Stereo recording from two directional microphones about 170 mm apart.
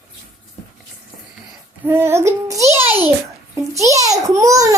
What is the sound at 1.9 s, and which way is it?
A child's voice, 15° right (ahead or behind).